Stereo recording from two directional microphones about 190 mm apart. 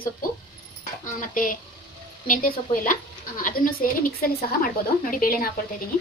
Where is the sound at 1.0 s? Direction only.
45° left (ahead or behind).